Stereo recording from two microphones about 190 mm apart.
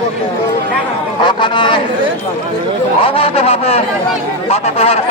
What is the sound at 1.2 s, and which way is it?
Speech, 25° left (ahead or behind).